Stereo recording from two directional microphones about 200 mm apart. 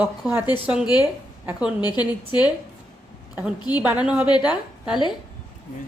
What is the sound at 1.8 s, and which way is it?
Speech, 20° left (ahead or behind).